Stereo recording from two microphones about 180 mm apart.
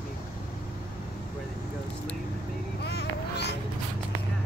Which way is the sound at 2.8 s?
65° left (ahead or behind).